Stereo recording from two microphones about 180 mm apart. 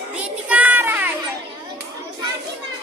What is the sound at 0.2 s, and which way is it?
Children playing, 5° right (ahead or behind).